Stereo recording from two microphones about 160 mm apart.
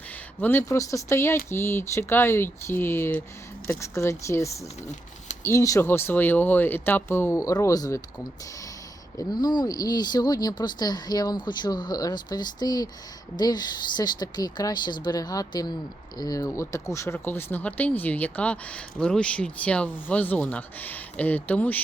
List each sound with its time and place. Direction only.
0.4 s speech: 15° left (ahead or behind)
9.3 s speech: 25° left (ahead or behind); by 21.8 s 10° left (ahead or behind)